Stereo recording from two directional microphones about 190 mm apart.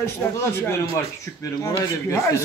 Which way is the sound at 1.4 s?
15° left (ahead or behind).